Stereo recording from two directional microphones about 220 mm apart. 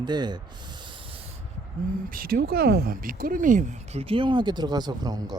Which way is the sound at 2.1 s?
40° right (ahead or behind).